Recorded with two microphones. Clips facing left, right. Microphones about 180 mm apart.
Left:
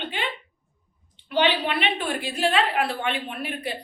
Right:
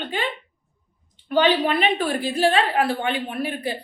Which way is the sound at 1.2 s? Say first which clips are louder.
Right 4 dB; 45° right (ahead or behind).